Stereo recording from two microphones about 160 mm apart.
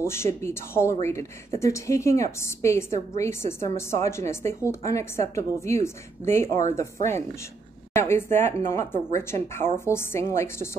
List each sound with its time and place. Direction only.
0.0 s a woman's voice: 15° left (ahead or behind)
7.9 s a woman's voice: 15° left (ahead or behind)